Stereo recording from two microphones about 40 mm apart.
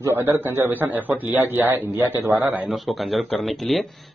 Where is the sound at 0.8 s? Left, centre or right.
Right.